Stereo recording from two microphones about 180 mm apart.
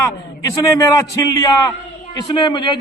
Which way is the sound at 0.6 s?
15° left (ahead or behind).